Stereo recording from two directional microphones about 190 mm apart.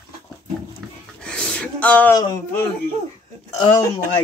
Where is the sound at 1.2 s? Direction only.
5° left (ahead or behind).